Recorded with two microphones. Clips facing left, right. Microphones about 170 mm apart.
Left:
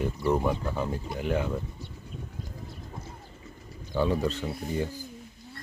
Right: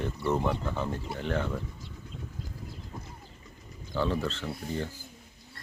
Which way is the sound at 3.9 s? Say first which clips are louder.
Left 3 dB; 15° left (ahead or behind).